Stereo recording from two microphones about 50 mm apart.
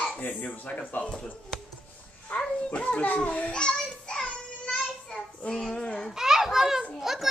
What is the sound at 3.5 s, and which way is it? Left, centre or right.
Child singing, centre.